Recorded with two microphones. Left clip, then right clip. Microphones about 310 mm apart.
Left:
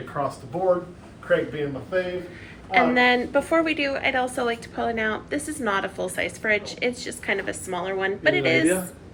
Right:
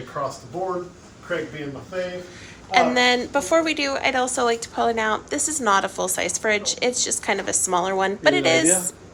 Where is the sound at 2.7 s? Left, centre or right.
Centre.